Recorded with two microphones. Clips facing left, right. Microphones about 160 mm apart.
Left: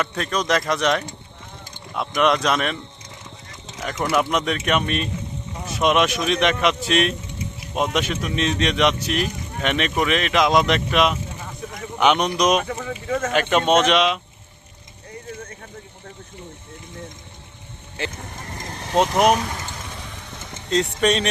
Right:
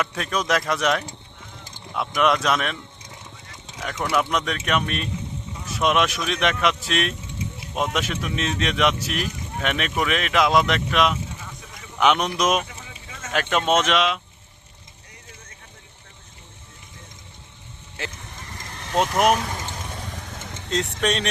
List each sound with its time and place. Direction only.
0.0 s speech: 5° right (ahead or behind)
3.8 s speech: 5° left (ahead or behind)
12.6 s speech: 60° left (ahead or behind)
13.3 s speech: centre (ahead or behind)
18.2 s vehicle: 45° left (ahead or behind)
19.1 s speech: centre (ahead or behind)
20.7 s speech: centre (ahead or behind)